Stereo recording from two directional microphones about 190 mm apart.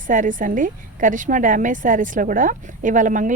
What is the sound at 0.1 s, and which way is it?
A woman's voice, 45° right (ahead or behind).